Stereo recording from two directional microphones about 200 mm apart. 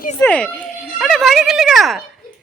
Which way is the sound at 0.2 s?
5° left (ahead or behind).